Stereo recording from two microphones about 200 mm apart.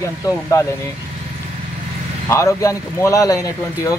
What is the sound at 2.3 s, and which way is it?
Speech, 15° left (ahead or behind).